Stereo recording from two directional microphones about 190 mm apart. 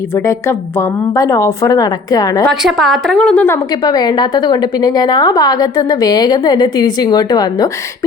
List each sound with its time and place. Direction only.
0.3 s a woman's voice: 15° left (ahead or behind)
2.5 s a woman's voice: centre (ahead or behind); by 7.7 s 20° left (ahead or behind)